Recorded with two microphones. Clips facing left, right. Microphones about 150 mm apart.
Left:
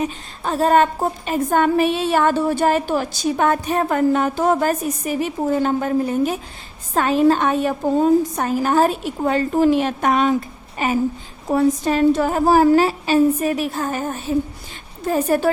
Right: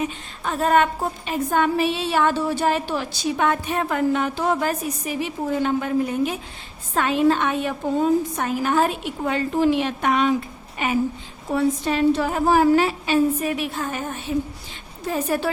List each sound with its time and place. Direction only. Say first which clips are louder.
0.0 s a woman's voice: left 3 dB; 35° left (ahead or behind)